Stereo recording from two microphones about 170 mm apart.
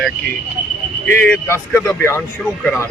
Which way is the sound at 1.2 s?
10° left (ahead or behind).